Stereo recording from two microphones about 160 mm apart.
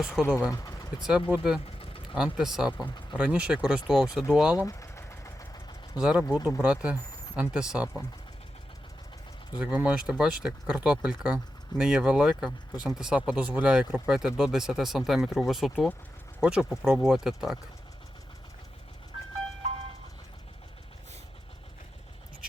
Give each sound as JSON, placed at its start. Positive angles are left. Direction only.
{"t": 0.0, "sound": "speech", "side_deg": -5}
{"t": 0.5, "sound": "vehicle", "side_deg": 20}
{"t": 1.0, "sound": "speech", "side_deg": -5}
{"t": 4.5, "sound": "vehicle", "side_deg": 20}
{"t": 6.0, "sound": "speech", "side_deg": -5}
{"t": 9.6, "sound": "speech", "side_deg": -10}